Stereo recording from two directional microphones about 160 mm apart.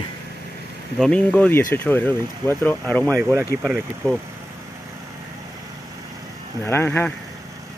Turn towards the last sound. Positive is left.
turn(degrees=10)  # may be behind; listen again after turning